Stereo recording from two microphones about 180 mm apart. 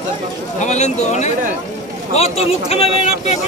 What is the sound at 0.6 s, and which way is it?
Speech, 40° left (ahead or behind).